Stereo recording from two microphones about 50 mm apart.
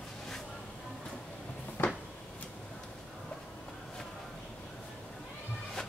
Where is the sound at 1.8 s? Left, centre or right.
Left.